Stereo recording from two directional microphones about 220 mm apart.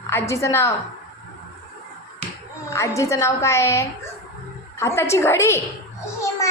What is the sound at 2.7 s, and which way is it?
A woman's voice, 15° left (ahead or behind).